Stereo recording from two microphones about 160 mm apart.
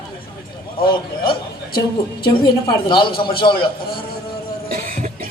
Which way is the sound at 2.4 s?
30° left (ahead or behind).